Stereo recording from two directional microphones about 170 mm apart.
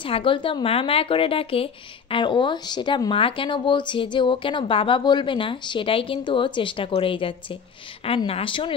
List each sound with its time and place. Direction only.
0.0 s a woman's voice: 30° left (ahead or behind)